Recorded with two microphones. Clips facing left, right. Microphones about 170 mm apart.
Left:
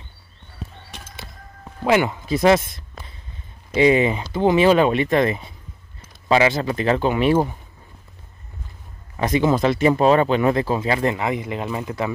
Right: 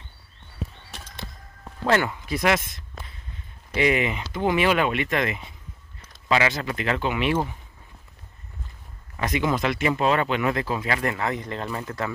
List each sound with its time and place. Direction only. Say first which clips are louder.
0.9 s a sound: left 2 dB; centre (ahead or behind)
1.9 s speech: left 4 dB; 20° left (ahead or behind)
3.7 s speech: left 6 dB; 25° left (ahead or behind)
9.1 s speech: left 6 dB; 30° left (ahead or behind); by 12.1 s 15° left (ahead or behind)